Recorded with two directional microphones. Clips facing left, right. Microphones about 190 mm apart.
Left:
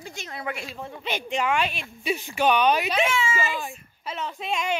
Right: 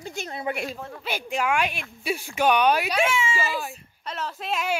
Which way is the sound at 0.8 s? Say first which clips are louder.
Left 1 dB; 5° left (ahead or behind).